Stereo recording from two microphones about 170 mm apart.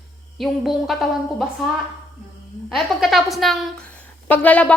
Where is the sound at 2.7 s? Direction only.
Centre (ahead or behind).